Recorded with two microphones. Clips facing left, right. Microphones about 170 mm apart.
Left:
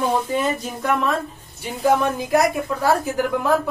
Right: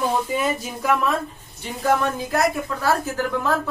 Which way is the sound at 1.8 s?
15° left (ahead or behind).